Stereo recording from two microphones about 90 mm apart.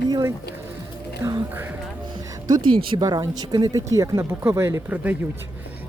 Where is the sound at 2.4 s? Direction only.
55° right (ahead or behind); by 5.0 s 30° right (ahead or behind).